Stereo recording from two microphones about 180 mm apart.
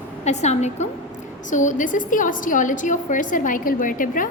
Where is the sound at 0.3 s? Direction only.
40° left (ahead or behind).